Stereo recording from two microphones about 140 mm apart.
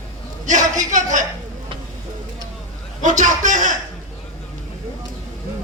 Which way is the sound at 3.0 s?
65° right (ahead or behind).